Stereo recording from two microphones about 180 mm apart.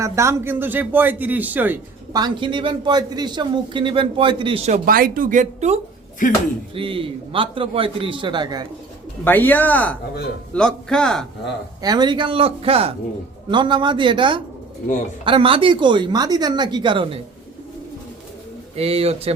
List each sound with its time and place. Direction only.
0.0 s a man's voice: 15° right (ahead or behind)
2.1 s a man's voice: 25° right (ahead or behind)
4.9 s a man's voice: 55° right (ahead or behind); by 8.6 s 25° right (ahead or behind)
9.2 s a man's voice: 10° left (ahead or behind)
11.8 s a man's voice: 20° right (ahead or behind)
18.8 s speech: 35° right (ahead or behind)